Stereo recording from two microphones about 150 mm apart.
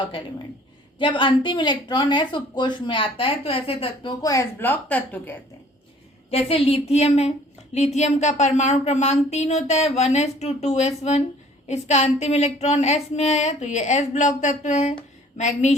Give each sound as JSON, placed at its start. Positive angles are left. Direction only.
{"t": 0.9, "sound": "speech", "side_deg": 35}
{"t": 4.2, "sound": "speech", "side_deg": 25}
{"t": 4.6, "sound": "speech", "side_deg": 10}
{"t": 6.3, "sound": "a sound", "side_deg": 40}